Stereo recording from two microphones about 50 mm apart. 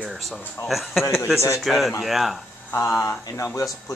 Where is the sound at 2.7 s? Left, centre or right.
Left.